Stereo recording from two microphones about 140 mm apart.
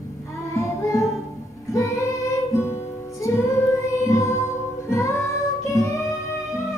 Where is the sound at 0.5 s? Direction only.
20° left (ahead or behind).